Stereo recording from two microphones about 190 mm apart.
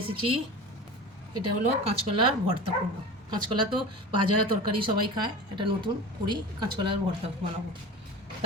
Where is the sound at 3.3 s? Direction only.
25° right (ahead or behind).